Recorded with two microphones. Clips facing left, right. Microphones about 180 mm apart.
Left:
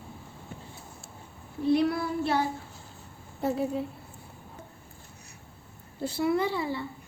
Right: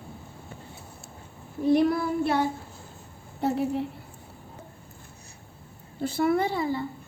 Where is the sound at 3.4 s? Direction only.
70° right (ahead or behind).